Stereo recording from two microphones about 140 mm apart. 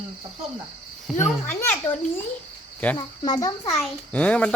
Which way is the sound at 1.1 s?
Centre (ahead or behind).